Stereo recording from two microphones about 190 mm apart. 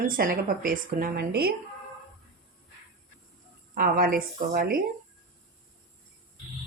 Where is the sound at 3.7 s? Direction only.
50° right (ahead or behind).